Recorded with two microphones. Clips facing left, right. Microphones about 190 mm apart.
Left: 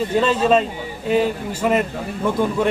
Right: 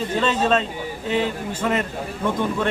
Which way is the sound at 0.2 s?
10° left (ahead or behind).